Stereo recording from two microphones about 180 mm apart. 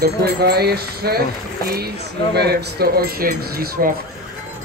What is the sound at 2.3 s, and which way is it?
Speech, 60° right (ahead or behind).